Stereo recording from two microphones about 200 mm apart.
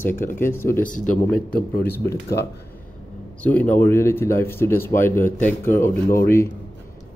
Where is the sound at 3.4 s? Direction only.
10° left (ahead or behind).